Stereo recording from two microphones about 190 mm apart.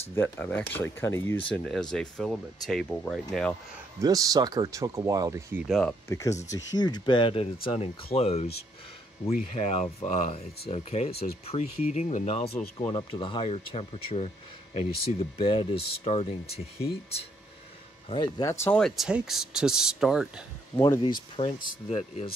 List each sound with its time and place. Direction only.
0.1 s speech: 10° left (ahead or behind)
1.5 s speech: 5° left (ahead or behind)
4.0 s speech: 20° right (ahead or behind)
5.7 s speech: 5° left (ahead or behind)
6.0 s speech: 15° left (ahead or behind); by 8.5 s 35° left (ahead or behind)
9.5 s speech: 35° left (ahead or behind)
18.0 s speech: 25° left (ahead or behind)
18.5 s speech: 15° left (ahead or behind)
18.8 s speech: centre (ahead or behind)
20.7 s speech: 15° left (ahead or behind)
21.0 s speech: 25° left (ahead or behind)